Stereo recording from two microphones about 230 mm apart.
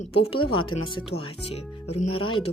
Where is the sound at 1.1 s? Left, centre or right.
Left.